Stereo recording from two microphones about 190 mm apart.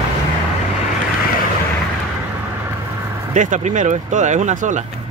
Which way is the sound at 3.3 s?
40° right (ahead or behind).